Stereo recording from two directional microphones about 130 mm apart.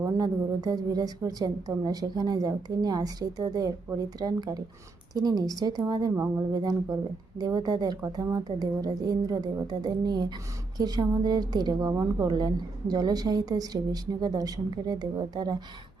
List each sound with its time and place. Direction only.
0.0 s a woman's voice: 30° right (ahead or behind)